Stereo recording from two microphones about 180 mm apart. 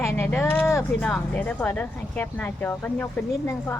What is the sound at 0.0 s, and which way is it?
Speech, 15° left (ahead or behind).